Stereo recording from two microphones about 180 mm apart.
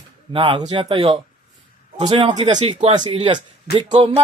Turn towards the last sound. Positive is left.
turn(degrees=-25)  # may be behind; listen again after turning